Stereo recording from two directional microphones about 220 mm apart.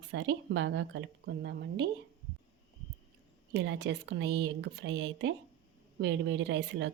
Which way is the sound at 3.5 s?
50° right (ahead or behind).